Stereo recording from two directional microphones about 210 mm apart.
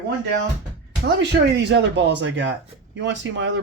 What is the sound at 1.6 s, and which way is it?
Speech, 55° right (ahead or behind).